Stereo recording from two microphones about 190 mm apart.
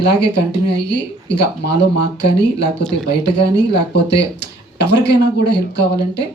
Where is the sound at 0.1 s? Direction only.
60° left (ahead or behind).